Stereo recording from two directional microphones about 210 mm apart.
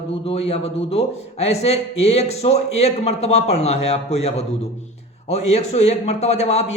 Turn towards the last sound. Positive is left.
turn(degrees=30)  # may be behind; listen again after turning